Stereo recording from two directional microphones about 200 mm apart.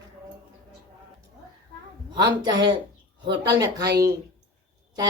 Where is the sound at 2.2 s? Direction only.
20° right (ahead or behind).